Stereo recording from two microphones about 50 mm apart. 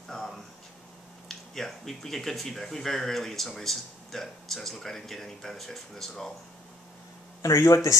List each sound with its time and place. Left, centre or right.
0.1 s a sound: centre
1.3 s speech: centre
7.5 s speech: left